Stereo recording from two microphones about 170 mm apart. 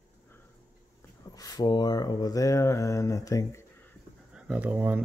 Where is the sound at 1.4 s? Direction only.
25° left (ahead or behind).